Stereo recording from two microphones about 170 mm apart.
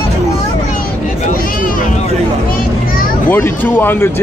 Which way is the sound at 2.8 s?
60° left (ahead or behind).